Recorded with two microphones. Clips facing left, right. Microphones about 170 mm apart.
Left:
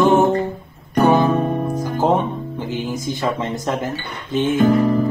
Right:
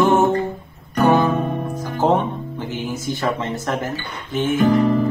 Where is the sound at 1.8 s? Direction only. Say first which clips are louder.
Right 1 dB; 10° left (ahead or behind).